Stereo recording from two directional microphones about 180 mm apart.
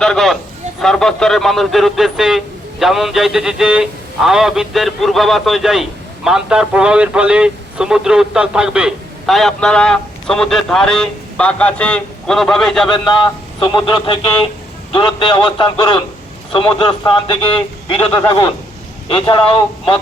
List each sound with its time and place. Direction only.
0.0 s speech: centre (ahead or behind)
13.6 s a man's voice: 25° left (ahead or behind)